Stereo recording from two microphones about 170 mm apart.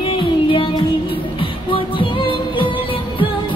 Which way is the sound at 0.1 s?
30° left (ahead or behind).